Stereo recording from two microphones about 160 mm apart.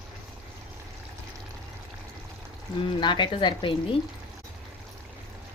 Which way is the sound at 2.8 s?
30° left (ahead or behind).